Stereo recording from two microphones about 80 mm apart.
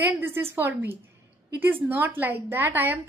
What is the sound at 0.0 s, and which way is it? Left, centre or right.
A woman's voice, right.